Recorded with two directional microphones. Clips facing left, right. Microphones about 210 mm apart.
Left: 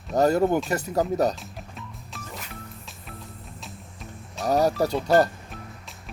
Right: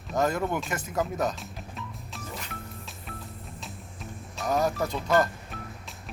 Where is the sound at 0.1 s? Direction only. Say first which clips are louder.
Left 7 dB; 35° left (ahead or behind).